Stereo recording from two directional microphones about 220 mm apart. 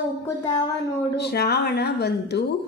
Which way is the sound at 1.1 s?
50° left (ahead or behind).